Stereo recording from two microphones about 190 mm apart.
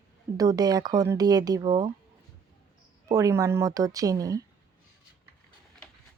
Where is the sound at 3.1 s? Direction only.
15° right (ahead or behind).